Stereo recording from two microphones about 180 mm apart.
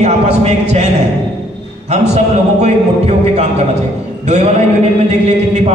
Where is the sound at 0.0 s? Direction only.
40° right (ahead or behind).